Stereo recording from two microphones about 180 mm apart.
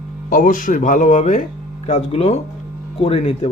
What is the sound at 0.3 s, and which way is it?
Speech, 50° left (ahead or behind).